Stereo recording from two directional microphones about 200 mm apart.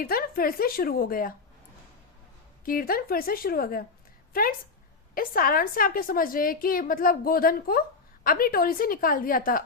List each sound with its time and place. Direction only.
0.0 s a woman's voice: 45° left (ahead or behind)
2.6 s a woman's voice: 45° left (ahead or behind)